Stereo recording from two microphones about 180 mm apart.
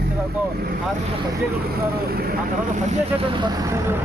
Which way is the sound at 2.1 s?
55° right (ahead or behind).